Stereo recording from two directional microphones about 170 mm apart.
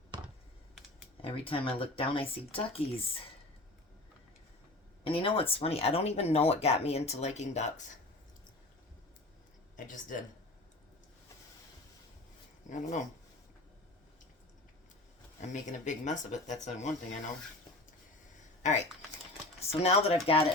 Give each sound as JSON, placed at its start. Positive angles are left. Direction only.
{"t": 0.1, "sound": "computer keyboard", "side_deg": -25}
{"t": 1.2, "sound": "speech", "side_deg": 30}
{"t": 5.0, "sound": "speech", "side_deg": 30}
{"t": 9.7, "sound": "speech", "side_deg": 50}
{"t": 12.7, "sound": "speech", "side_deg": 45}
{"t": 15.4, "sound": "speech", "side_deg": 45}
{"t": 18.6, "sound": "speech", "side_deg": 45}